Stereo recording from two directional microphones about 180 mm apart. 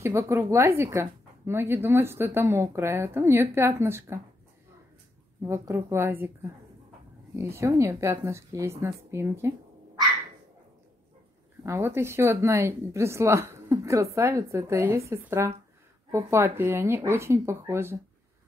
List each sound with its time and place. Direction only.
0.0 s a woman's voice: 15° right (ahead or behind)
5.4 s a woman's voice: 15° right (ahead or behind)
11.6 s a woman's voice: 15° right (ahead or behind)